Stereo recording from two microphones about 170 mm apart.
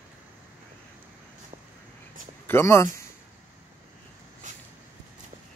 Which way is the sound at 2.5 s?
15° left (ahead or behind).